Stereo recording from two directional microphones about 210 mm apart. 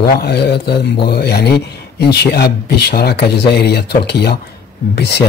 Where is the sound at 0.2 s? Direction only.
50° left (ahead or behind).